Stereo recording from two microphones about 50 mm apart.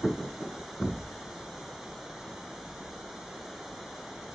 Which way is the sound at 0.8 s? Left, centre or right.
Centre.